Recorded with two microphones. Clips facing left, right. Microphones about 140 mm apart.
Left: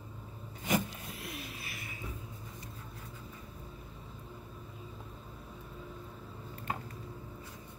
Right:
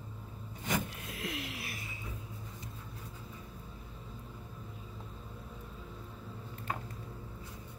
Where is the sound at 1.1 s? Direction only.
90° right.